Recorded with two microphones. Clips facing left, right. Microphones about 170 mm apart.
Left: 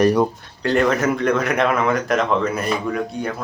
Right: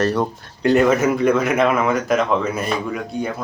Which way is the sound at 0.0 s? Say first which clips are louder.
Left 3 dB; 15° left (ahead or behind).